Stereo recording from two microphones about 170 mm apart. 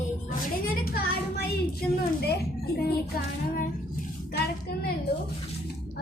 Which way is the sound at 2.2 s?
70° left (ahead or behind).